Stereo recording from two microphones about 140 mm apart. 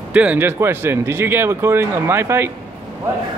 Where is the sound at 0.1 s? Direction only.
10° right (ahead or behind).